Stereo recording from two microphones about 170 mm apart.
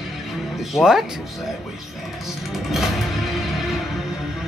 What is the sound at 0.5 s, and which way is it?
Speech, centre (ahead or behind).